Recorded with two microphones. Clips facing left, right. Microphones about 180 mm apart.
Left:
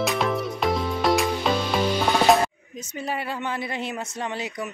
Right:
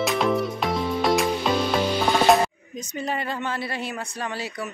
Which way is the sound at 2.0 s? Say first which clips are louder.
Right 1 dB; centre (ahead or behind).